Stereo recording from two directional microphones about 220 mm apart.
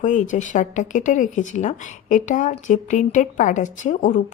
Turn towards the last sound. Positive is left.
turn(degrees=35)  # may be behind; listen again after turning